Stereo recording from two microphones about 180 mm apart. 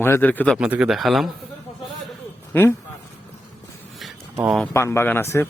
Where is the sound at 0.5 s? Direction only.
5° right (ahead or behind).